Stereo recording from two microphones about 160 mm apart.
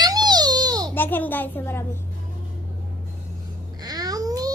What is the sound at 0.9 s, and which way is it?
A woman's voice, 10° left (ahead or behind).